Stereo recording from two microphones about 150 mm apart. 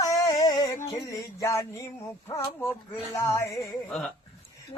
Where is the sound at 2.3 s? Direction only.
25° left (ahead or behind).